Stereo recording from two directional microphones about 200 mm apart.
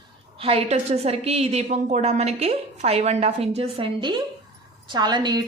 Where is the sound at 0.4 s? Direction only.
30° right (ahead or behind).